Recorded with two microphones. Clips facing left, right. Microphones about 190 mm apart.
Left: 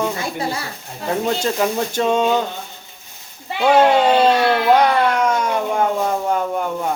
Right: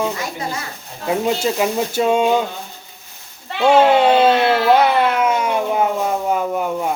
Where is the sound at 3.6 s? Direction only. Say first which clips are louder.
Right 1 dB; 10° right (ahead or behind).